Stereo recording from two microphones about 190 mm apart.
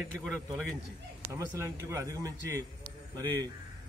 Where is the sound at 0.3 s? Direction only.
Centre (ahead or behind).